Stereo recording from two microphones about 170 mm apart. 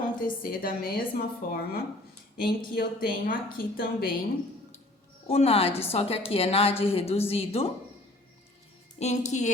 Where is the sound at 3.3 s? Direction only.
60° left (ahead or behind).